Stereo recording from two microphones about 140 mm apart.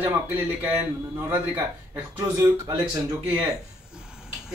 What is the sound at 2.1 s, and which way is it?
Speech, 20° right (ahead or behind).